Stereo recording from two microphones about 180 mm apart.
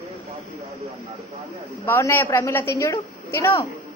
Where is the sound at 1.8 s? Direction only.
10° left (ahead or behind).